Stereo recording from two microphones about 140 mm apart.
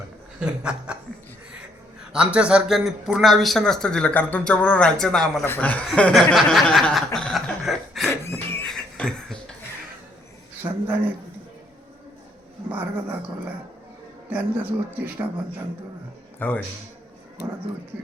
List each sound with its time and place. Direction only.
0.3 s speech: 5° right (ahead or behind)
2.1 s a man's voice: 5° right (ahead or behind); by 5.8 s 10° left (ahead or behind)
5.9 s chuckle: 5° left (ahead or behind)
8.1 s a sound: 15° left (ahead or behind)
8.6 s a sound: 5° left (ahead or behind)
10.6 s speech: 15° right (ahead or behind)
12.7 s speech: 15° right (ahead or behind)
14.3 s speech: 10° right (ahead or behind)
16.4 s speech: 10° left (ahead or behind)